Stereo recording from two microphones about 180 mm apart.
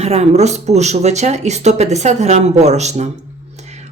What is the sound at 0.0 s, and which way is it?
Speech, 35° right (ahead or behind).